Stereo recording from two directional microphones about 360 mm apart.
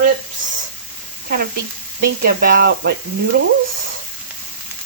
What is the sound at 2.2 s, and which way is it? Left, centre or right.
Speech, right.